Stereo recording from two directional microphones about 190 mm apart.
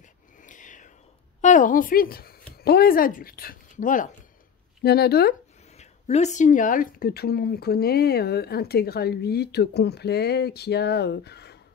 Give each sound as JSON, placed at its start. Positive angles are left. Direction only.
{"t": 0.4, "sound": "a sound", "side_deg": 40}
{"t": 1.4, "sound": "a woman's voice", "side_deg": 40}
{"t": 4.8, "sound": "speech", "side_deg": 55}
{"t": 5.8, "sound": "speech", "side_deg": 35}